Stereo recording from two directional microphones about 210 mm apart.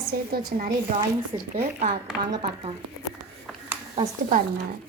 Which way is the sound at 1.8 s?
50° right (ahead or behind).